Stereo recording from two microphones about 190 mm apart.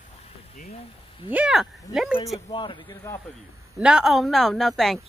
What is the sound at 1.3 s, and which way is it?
Speech, 5° right (ahead or behind).